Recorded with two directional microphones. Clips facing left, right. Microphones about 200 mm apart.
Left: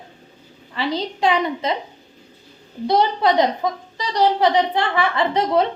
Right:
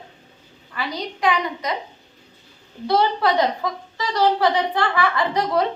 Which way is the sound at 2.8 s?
20° left (ahead or behind).